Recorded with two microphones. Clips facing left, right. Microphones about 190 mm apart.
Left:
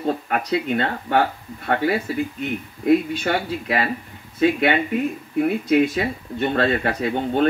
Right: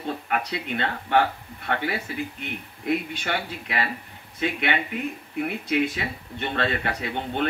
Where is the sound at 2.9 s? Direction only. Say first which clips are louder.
Left 8 dB; 40° left (ahead or behind).